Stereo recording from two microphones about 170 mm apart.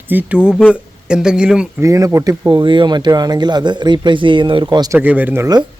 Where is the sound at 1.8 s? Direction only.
20° right (ahead or behind).